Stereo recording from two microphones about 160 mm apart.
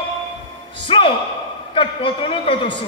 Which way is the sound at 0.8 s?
35° left (ahead or behind).